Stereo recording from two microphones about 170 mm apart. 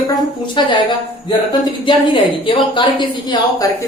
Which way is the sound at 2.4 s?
30° left (ahead or behind).